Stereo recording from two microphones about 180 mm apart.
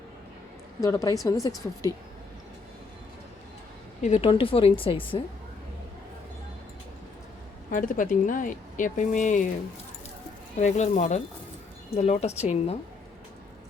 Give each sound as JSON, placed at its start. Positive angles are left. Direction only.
{"t": 0.8, "sound": "a woman's voice", "side_deg": 20}
{"t": 4.0, "sound": "a woman's voice", "side_deg": 35}
{"t": 7.7, "sound": "speech", "side_deg": 45}
{"t": 10.6, "sound": "speech", "side_deg": 40}